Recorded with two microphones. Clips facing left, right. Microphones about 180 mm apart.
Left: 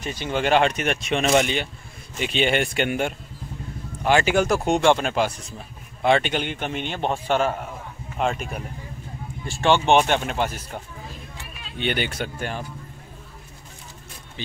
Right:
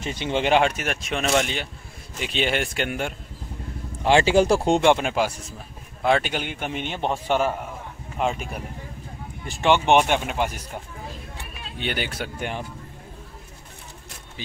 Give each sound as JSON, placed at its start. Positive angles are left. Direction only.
{"t": 0.0, "sound": "speech", "side_deg": -25}
{"t": 4.0, "sound": "speech", "side_deg": -25}
{"t": 4.9, "sound": "speech", "side_deg": -10}
{"t": 9.5, "sound": "speech", "side_deg": -15}
{"t": 11.8, "sound": "speech", "side_deg": -5}
{"t": 12.4, "sound": "speech", "side_deg": -20}